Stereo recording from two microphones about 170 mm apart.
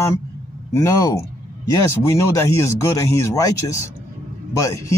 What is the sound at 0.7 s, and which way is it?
Speech, 20° left (ahead or behind).